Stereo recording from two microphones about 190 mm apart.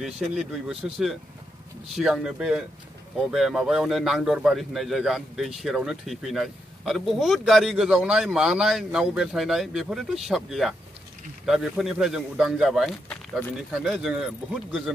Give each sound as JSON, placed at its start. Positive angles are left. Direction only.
{"t": 0.0, "sound": "a man's voice", "side_deg": 0}